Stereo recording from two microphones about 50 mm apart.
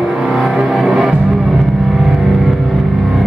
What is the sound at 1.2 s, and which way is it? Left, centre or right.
Vehicle, centre.